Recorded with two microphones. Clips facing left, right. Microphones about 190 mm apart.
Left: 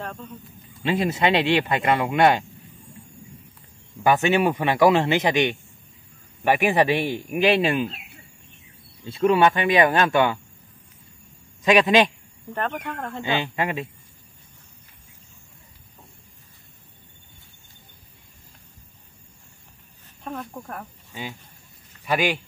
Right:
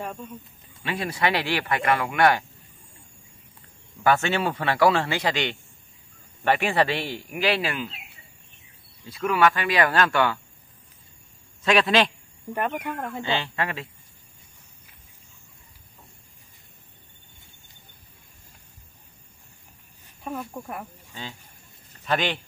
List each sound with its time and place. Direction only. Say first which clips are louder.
0.0 s speech: right 1 dB; 10° right (ahead or behind)
0.8 s speech: left 5 dB; 20° left (ahead or behind)
4.0 s a man's voice: left 3 dB; 15° left (ahead or behind)
9.0 s speech: left 4 dB; 25° left (ahead or behind)
11.6 s a man's voice: left 3 dB; 15° left (ahead or behind)
12.5 s speech: right 1 dB; 10° right (ahead or behind)
13.2 s a man's voice: left 4 dB; 15° left (ahead or behind)
20.2 s speech: right 1 dB; 5° right (ahead or behind)
21.1 s speech: left 4 dB; 15° left (ahead or behind)